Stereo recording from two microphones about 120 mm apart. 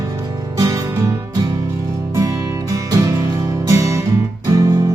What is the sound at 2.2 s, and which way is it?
Music, 30° right (ahead or behind).